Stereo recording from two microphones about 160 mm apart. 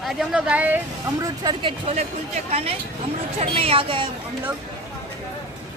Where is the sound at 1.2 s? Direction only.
30° right (ahead or behind).